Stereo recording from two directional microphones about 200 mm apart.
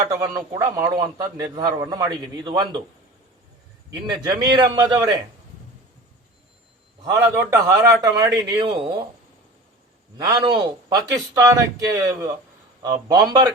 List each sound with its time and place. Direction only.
0.1 s a man's voice: 15° right (ahead or behind)
4.0 s a man's voice: 20° right (ahead or behind)
7.0 s a man's voice: 15° right (ahead or behind)
10.2 s a man's voice: 20° right (ahead or behind)